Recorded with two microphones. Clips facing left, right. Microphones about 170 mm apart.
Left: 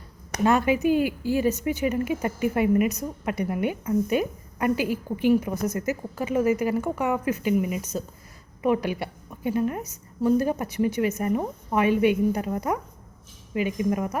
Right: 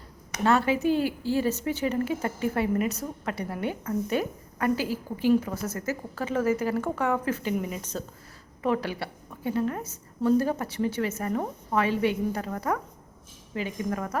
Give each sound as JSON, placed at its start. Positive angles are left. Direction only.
{"t": 0.4, "sound": "a woman's voice", "side_deg": 15}